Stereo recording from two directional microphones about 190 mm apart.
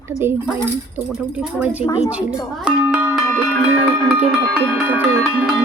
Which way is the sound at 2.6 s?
5° right (ahead or behind).